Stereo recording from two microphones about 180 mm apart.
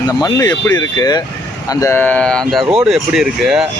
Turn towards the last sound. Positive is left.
turn(degrees=0)  # may be behind; listen again after turning